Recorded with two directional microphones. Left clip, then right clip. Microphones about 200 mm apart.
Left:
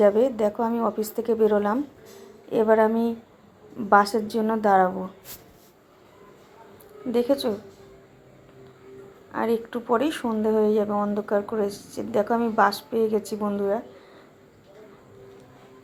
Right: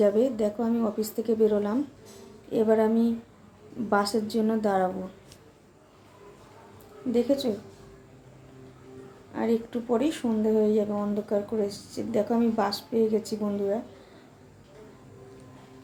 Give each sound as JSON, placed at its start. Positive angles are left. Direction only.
{"t": 0.0, "sound": "speech", "side_deg": -5}
{"t": 7.1, "sound": "speech", "side_deg": -5}
{"t": 9.3, "sound": "speech", "side_deg": 0}
{"t": 11.7, "sound": "speech", "side_deg": -30}
{"t": 11.9, "sound": "speech", "side_deg": 0}